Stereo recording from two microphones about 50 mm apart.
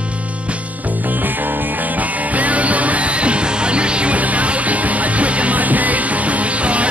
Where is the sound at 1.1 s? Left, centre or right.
Right.